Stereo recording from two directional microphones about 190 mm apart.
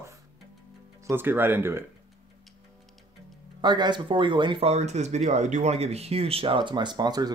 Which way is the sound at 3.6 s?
25° right (ahead or behind).